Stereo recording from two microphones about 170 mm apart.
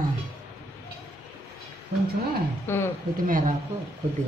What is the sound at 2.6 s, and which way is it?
Speech, 15° left (ahead or behind).